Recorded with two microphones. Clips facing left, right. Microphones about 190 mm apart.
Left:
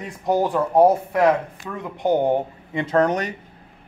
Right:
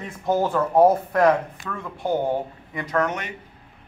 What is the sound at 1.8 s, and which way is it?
A man's voice, 20° left (ahead or behind).